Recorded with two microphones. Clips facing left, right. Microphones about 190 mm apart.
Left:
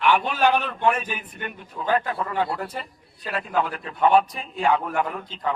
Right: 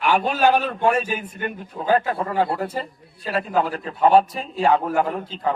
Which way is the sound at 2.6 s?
30° right (ahead or behind).